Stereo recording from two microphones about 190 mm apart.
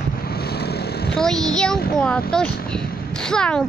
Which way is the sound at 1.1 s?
Centre (ahead or behind).